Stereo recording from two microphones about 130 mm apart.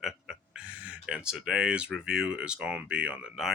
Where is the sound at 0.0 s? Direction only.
Centre (ahead or behind).